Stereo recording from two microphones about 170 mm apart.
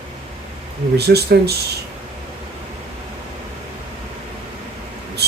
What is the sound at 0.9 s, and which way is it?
Speech, 75° right (ahead or behind).